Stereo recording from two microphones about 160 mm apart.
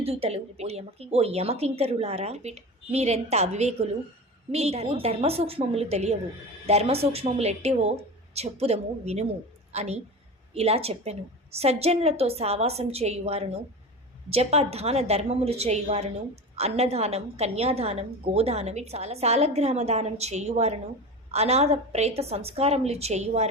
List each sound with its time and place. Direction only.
0.0 s a woman's voice: 40° right (ahead or behind)